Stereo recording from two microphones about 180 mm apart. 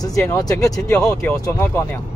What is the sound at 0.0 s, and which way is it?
Speech, 20° left (ahead or behind).